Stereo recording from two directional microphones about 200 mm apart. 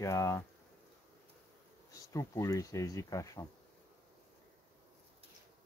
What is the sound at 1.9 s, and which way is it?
Speech, 15° left (ahead or behind).